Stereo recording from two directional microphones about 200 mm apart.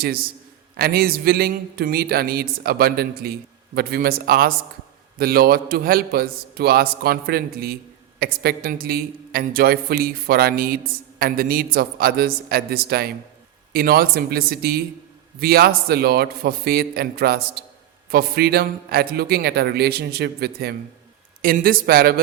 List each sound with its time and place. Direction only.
0.0 s a man's voice: 50° right (ahead or behind)